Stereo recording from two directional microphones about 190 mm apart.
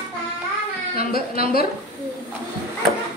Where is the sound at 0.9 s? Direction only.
50° left (ahead or behind).